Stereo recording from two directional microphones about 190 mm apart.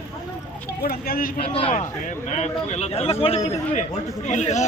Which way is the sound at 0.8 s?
50° left (ahead or behind).